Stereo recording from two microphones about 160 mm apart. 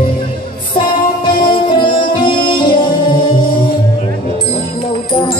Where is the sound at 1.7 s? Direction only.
30° left (ahead or behind).